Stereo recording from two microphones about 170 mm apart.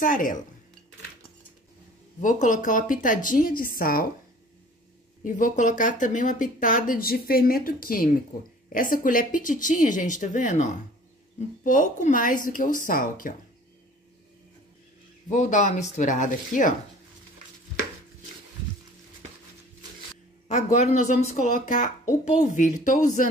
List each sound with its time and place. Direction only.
0.0 s speech: 50° left (ahead or behind)
2.2 s speech: 50° left (ahead or behind)
5.2 s speech: 50° left (ahead or behind)
15.2 s speech: 45° left (ahead or behind)
20.4 s speech: 45° left (ahead or behind)